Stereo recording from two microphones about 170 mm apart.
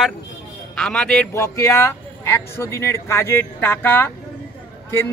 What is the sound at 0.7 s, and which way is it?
Speech, 5° left (ahead or behind).